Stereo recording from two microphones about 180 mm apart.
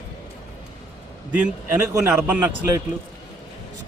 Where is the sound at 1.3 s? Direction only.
10° right (ahead or behind).